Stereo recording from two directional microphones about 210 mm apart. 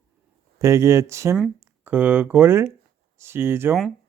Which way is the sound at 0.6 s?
15° right (ahead or behind).